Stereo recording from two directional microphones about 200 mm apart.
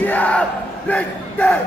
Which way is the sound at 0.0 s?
10° left (ahead or behind).